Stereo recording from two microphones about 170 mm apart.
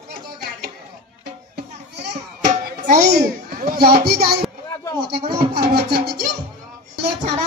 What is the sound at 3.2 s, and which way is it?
Speech, 65° right (ahead or behind).